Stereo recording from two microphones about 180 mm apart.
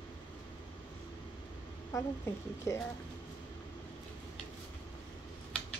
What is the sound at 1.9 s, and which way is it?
Speech, 15° left (ahead or behind).